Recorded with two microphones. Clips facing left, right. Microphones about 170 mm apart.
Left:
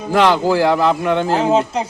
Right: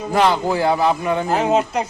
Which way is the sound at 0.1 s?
80° left.